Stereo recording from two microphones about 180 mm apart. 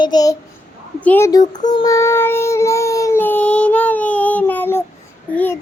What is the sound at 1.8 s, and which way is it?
Child singing, 15° left (ahead or behind).